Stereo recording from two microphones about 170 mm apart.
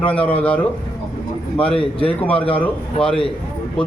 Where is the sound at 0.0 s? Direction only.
10° left (ahead or behind).